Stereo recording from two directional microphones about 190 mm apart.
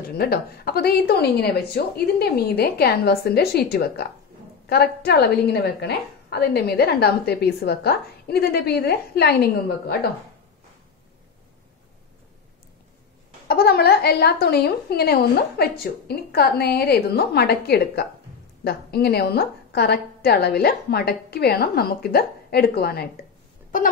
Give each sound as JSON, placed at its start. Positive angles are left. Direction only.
{"t": 0.1, "sound": "a woman's voice", "side_deg": 55}
{"t": 13.5, "sound": "a woman's voice", "side_deg": 55}